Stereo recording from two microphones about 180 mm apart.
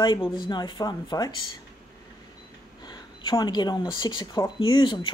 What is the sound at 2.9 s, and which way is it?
Speech, 25° left (ahead or behind).